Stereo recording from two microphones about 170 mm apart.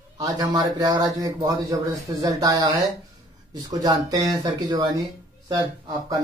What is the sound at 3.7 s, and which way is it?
Speech, 20° right (ahead or behind).